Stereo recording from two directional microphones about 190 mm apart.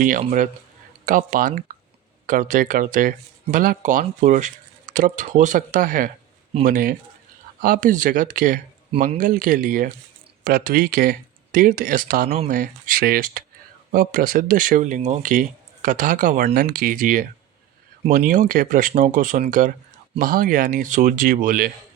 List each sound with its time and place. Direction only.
0.0 s speech: 45° right (ahead or behind)
6.5 s speech: 35° right (ahead or behind)
7.6 s speech: 45° right (ahead or behind)
18.3 s speech: 45° right (ahead or behind)